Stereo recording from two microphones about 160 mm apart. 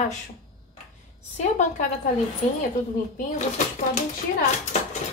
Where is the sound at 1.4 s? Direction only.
50° left (ahead or behind).